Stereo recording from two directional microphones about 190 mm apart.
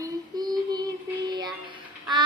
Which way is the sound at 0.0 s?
20° right (ahead or behind).